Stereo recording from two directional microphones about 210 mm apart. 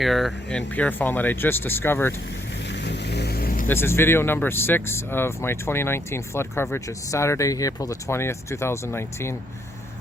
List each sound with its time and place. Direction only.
0.0 s speech: centre (ahead or behind)
2.8 s vehicle: 55° left (ahead or behind)
3.7 s speech: 10° left (ahead or behind)